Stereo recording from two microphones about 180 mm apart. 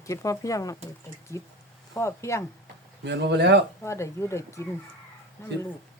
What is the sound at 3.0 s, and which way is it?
Speech, 70° right (ahead or behind).